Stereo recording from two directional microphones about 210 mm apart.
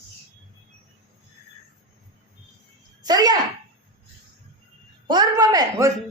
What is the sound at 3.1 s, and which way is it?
Speech, 20° right (ahead or behind).